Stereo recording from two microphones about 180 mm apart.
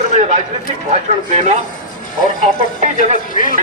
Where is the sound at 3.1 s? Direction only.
45° left (ahead or behind).